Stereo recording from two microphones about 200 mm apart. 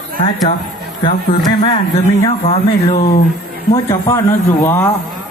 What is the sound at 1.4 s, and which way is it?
Speech, 25° left (ahead or behind).